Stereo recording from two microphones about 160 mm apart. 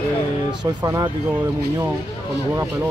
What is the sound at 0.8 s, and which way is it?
Speech, 25° right (ahead or behind).